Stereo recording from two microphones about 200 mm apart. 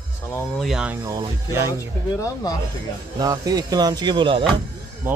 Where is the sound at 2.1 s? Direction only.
15° left (ahead or behind).